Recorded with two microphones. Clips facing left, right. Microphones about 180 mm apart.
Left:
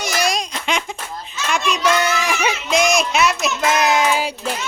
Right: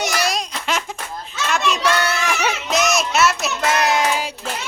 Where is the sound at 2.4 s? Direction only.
10° left (ahead or behind).